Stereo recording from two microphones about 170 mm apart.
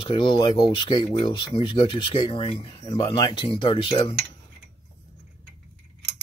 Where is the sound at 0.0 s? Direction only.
30° left (ahead or behind).